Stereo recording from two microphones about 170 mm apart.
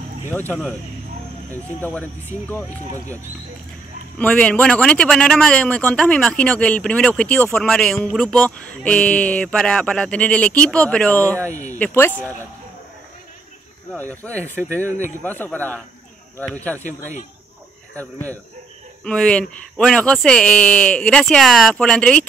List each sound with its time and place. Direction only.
1.5 s a man's voice: 10° left (ahead or behind)
4.2 s a man's voice: 10° left (ahead or behind)
11.5 s speech: 45° left (ahead or behind)
11.8 s a man's voice: 10° left (ahead or behind)
13.9 s a man's voice: 10° left (ahead or behind)
14.3 s speech: 15° right (ahead or behind)
15.2 s a man's voice: 10° left (ahead or behind)
17.9 s a man's voice: 10° left (ahead or behind)